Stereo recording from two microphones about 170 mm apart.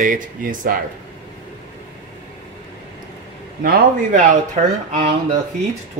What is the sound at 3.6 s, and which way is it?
Speech, 60° right (ahead or behind).